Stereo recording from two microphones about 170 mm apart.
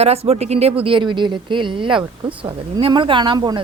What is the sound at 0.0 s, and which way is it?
Speech, 35° right (ahead or behind).